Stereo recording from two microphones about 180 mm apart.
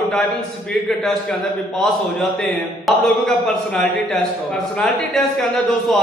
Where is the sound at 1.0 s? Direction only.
5° left (ahead or behind).